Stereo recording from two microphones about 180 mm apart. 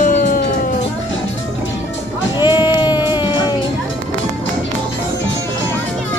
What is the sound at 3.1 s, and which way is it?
Music, 25° left (ahead or behind).